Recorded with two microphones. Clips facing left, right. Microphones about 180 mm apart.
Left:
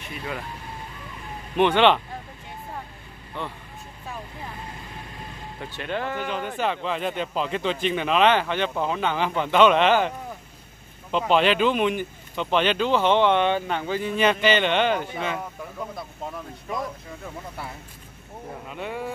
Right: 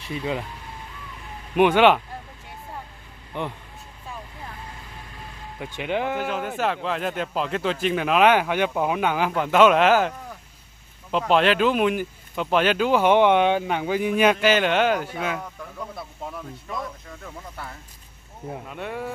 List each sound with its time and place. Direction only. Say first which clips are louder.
0.1 s speech: right 6 dB; 20° right (ahead or behind)
1.5 s speech: right 2 dB; 10° right (ahead or behind)
3.3 s speech: right 3 dB; 15° right (ahead or behind)
5.8 s speech: right 4 dB; 15° right (ahead or behind)
6.1 s speech: right 2 dB; 5° right (ahead or behind)
18.7 s speech: left 1 dB; centre (ahead or behind)